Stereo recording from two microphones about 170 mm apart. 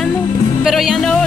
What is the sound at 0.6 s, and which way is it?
Speech, centre (ahead or behind).